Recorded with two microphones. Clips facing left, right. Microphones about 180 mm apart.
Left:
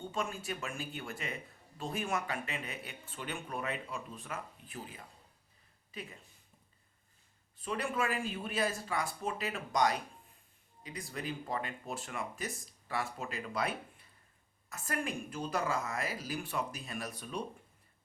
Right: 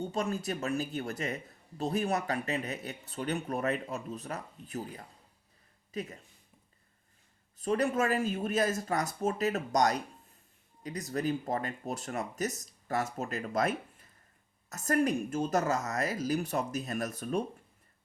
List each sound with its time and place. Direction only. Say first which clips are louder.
0.0 s speech: right 6 dB; 40° right (ahead or behind)
7.6 s speech: right 6 dB; 40° right (ahead or behind)